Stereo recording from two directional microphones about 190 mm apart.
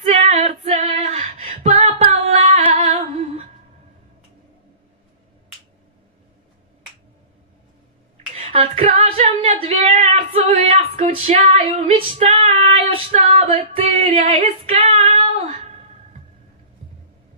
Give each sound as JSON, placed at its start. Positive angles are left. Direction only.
{"t": 0.0, "sound": "female singing", "side_deg": -35}
{"t": 8.4, "sound": "female singing", "side_deg": -35}